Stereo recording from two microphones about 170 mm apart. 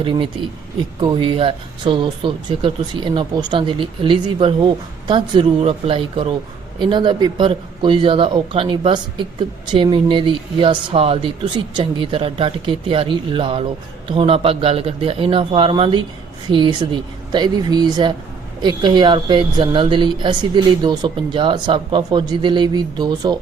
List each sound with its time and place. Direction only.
0.0 s speech: 30° right (ahead or behind)